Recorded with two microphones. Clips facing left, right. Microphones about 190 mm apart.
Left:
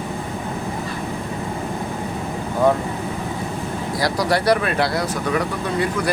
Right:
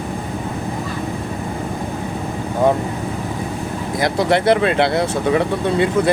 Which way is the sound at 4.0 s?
25° right (ahead or behind).